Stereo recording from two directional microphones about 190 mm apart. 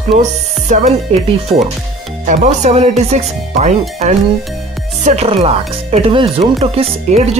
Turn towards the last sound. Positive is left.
turn(degrees=-35)  # may be behind; listen again after turning